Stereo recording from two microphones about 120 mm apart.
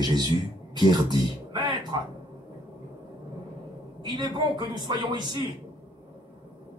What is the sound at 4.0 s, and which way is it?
Speech, 35° right (ahead or behind).